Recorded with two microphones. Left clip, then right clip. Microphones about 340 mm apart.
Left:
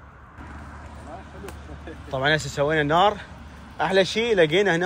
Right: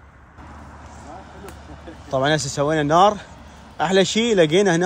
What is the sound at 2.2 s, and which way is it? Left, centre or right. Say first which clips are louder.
A man's voice: right 1 dB; centre.